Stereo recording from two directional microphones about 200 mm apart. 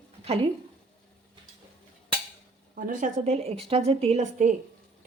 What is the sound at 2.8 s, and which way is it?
A woman's voice, 40° right (ahead or behind).